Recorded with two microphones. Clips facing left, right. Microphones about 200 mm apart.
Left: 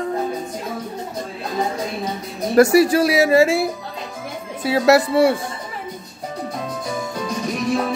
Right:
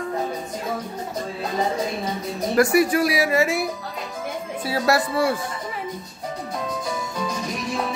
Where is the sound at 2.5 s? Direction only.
25° left (ahead or behind).